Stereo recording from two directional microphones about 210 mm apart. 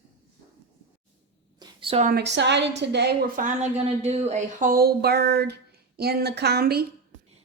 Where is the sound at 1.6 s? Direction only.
25° right (ahead or behind).